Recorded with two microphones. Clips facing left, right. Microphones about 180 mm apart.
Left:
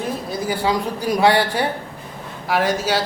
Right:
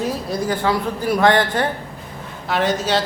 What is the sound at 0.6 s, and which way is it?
A woman's voice, 15° left (ahead or behind).